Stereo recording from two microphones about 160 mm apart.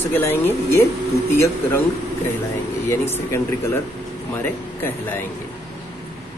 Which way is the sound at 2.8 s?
15° left (ahead or behind).